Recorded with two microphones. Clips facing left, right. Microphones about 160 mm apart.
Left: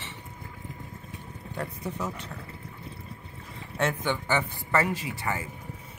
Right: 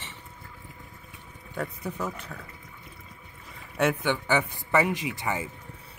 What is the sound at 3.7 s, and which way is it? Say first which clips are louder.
A man's voice: right 3 dB; 15° right (ahead or behind).